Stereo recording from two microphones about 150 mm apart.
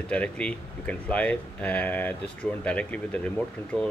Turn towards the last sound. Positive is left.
turn(degrees=10)  # may be behind; listen again after turning